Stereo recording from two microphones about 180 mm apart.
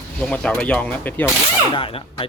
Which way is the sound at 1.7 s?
30° left (ahead or behind).